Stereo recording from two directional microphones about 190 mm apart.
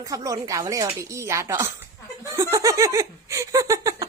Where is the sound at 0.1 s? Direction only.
15° right (ahead or behind).